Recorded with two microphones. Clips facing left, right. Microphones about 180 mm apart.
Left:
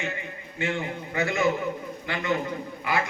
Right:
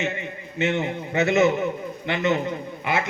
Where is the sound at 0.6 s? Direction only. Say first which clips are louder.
Right 5 dB; 20° right (ahead or behind).